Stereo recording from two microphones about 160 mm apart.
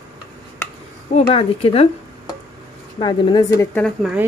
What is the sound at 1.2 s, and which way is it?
Speech, 35° left (ahead or behind).